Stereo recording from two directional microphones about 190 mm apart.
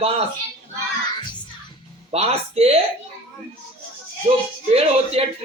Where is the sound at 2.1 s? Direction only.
35° right (ahead or behind).